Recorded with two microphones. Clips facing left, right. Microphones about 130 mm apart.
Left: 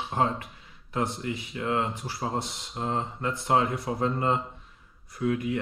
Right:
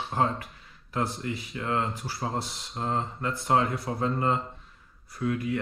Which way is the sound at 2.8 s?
25° left (ahead or behind).